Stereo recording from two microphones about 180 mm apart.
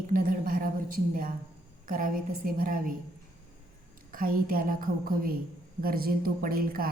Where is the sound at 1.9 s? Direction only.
50° right (ahead or behind).